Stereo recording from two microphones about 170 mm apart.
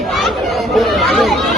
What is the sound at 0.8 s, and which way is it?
Chatter, centre (ahead or behind).